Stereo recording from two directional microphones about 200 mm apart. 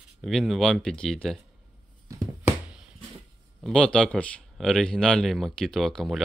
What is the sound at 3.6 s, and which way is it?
Speech, 5° left (ahead or behind).